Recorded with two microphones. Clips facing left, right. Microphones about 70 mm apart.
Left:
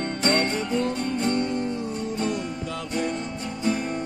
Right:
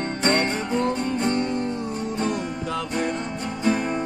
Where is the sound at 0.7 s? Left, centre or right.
Right.